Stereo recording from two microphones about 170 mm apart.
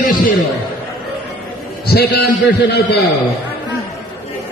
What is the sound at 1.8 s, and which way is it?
Speech, 65° left (ahead or behind).